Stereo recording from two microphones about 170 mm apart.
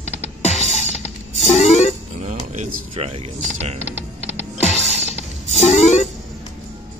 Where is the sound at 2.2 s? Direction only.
45° right (ahead or behind).